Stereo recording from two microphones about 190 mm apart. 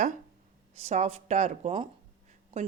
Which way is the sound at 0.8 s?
35° right (ahead or behind).